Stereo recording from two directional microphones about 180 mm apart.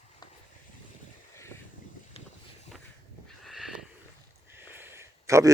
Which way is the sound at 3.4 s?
Centre (ahead or behind).